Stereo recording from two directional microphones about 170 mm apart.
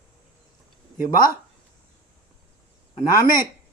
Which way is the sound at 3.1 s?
20° left (ahead or behind).